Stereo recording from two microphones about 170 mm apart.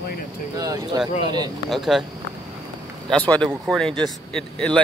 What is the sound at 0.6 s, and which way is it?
Speech, 20° right (ahead or behind).